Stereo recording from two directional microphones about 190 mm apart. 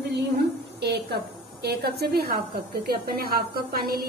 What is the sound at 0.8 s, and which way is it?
A woman's voice, 60° right (ahead or behind).